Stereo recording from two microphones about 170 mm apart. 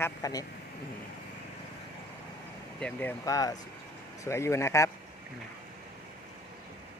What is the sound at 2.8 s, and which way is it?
Speech, 5° left (ahead or behind).